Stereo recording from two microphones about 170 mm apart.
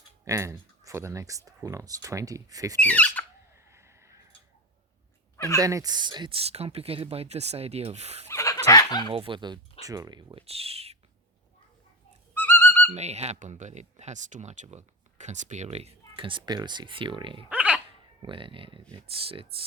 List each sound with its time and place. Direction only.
0.3 s speech: 15° right (ahead or behind)
2.8 s speech: 10° left (ahead or behind)
3.7 s a sound: 15° right (ahead or behind)
5.5 s speech: 20° right (ahead or behind); by 8.3 s 40° right (ahead or behind)
8.3 s dog: 15° left (ahead or behind)
9.0 s speech: 30° right (ahead or behind)
10.4 s speech: 35° right (ahead or behind)
12.3 s a sound: 10° left (ahead or behind)
12.9 s speech: 40° right (ahead or behind)
17.5 s dog: 5° right (ahead or behind)
18.2 s speech: 30° right (ahead or behind)